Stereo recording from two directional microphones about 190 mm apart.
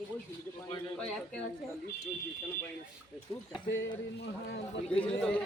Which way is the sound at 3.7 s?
65° left (ahead or behind).